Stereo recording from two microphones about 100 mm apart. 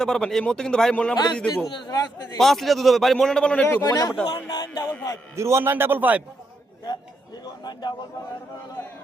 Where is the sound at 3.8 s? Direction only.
40° left (ahead or behind).